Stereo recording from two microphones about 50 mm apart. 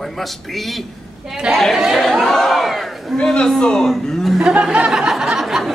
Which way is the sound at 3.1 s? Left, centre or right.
Centre.